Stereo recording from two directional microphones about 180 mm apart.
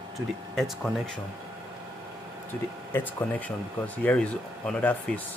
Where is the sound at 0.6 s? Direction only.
Centre (ahead or behind).